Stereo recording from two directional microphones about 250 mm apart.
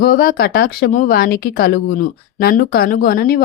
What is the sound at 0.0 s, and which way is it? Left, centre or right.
A woman's voice, left.